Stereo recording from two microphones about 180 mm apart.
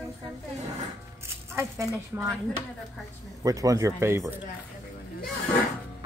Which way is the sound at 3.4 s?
20° right (ahead or behind).